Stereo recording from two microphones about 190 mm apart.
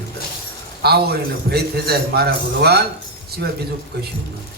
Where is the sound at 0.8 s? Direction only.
55° right (ahead or behind).